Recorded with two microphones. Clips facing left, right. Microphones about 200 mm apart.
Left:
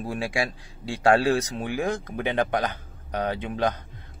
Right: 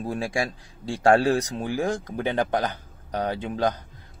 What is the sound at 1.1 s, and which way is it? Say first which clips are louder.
Speech: right 1 dB; 45° right (ahead or behind).